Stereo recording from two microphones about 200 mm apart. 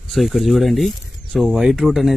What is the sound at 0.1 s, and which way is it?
Speech, centre (ahead or behind).